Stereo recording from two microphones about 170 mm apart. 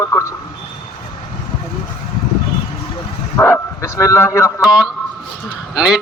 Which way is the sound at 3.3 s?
15° left (ahead or behind).